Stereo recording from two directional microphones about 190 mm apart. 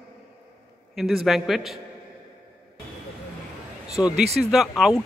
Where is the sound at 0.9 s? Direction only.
Centre (ahead or behind).